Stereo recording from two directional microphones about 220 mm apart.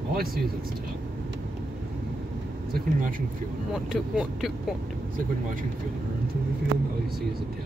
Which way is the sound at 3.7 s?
5° right (ahead or behind).